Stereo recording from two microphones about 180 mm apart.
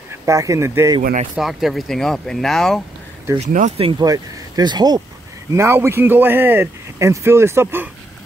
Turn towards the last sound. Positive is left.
turn(degrees=-10)  # may be behind; listen again after turning